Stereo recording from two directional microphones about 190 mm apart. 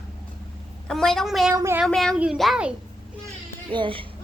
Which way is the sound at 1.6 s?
15° right (ahead or behind).